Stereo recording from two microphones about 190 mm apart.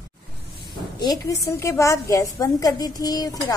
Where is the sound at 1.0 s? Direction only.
20° left (ahead or behind).